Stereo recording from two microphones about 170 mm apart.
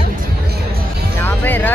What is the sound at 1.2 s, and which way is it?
Music, 10° left (ahead or behind).